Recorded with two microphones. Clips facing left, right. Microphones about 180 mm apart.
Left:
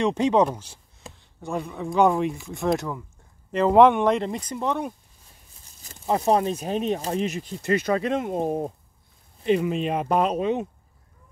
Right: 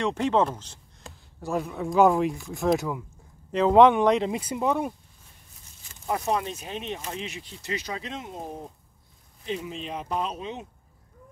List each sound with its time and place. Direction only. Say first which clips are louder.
0.0 s speech: left 4 dB; 15° left (ahead or behind)
1.4 s speech: right 1 dB; centre (ahead or behind)
6.0 s speech: left 6 dB; 30° left (ahead or behind); by 10.7 s 60° left (ahead or behind)